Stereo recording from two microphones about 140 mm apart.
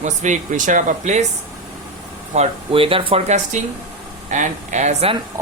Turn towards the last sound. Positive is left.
turn(degrees=-55)  # may be behind; listen again after turning